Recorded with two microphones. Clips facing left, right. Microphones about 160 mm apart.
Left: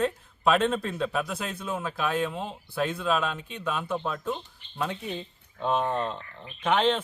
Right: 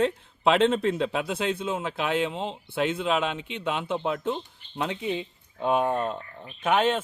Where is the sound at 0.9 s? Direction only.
20° right (ahead or behind).